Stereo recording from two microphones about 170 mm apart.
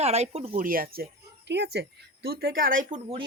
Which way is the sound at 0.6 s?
60° right (ahead or behind).